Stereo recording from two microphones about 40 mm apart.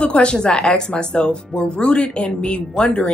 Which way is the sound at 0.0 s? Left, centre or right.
Left.